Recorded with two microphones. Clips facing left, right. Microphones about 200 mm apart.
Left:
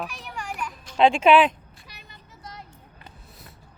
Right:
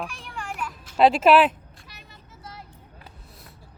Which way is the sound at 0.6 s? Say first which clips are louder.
Right 1 dB; 5° right (ahead or behind).